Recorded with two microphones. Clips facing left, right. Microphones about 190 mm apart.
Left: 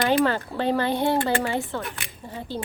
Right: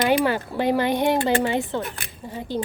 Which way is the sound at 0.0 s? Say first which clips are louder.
Right 1 dB; 15° right (ahead or behind).